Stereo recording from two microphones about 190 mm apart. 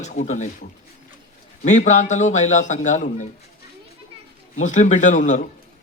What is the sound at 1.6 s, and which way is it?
A man's voice, 40° left (ahead or behind).